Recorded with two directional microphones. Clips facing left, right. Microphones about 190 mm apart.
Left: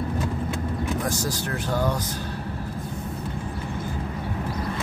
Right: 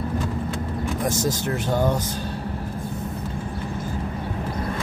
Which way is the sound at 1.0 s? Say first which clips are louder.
Right 4 dB; 25° right (ahead or behind).